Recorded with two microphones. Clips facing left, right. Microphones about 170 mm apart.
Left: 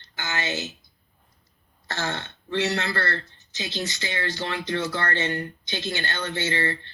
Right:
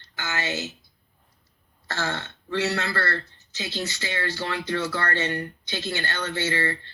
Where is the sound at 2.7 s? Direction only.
35° right (ahead or behind).